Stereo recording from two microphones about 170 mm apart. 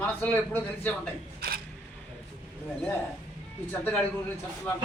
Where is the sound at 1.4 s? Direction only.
65° right (ahead or behind).